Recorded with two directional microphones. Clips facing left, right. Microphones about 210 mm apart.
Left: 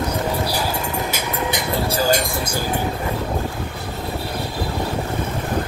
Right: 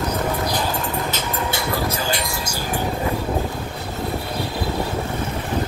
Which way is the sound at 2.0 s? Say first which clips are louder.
Left 5 dB; 50° left (ahead or behind).